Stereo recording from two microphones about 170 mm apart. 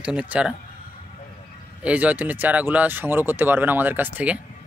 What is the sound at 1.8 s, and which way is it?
Speech, 10° right (ahead or behind).